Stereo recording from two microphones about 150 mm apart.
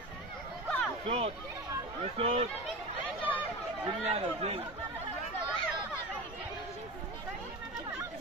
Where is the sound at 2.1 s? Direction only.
50° right (ahead or behind).